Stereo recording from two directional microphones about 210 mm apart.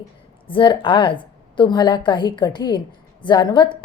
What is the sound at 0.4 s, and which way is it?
A woman's voice, 25° left (ahead or behind).